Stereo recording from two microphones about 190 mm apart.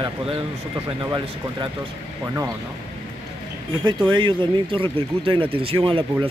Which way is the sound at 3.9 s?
25° right (ahead or behind).